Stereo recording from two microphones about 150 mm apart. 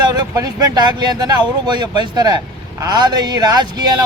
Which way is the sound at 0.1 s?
25° right (ahead or behind).